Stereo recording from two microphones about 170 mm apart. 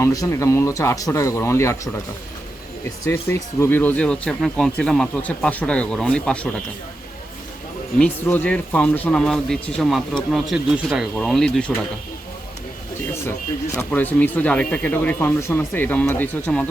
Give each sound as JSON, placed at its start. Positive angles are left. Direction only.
{"t": 0.0, "sound": "speech", "side_deg": 20}
{"t": 3.0, "sound": "speech", "side_deg": 15}
{"t": 7.9, "sound": "a man's voice", "side_deg": 10}
{"t": 13.7, "sound": "speech", "side_deg": 10}